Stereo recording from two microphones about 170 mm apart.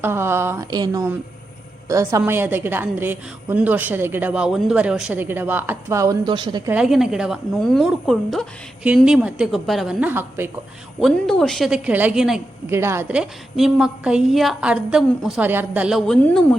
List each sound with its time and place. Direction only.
0.0 s a woman's voice: 15° right (ahead or behind)
6.7 s a woman's voice: 5° right (ahead or behind)
11.0 s a woman's voice: centre (ahead or behind)
12.6 s a woman's voice: 15° right (ahead or behind); by 16.6 s 5° left (ahead or behind)